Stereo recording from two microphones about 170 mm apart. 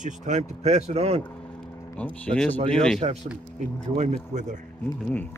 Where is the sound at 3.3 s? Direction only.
5° left (ahead or behind).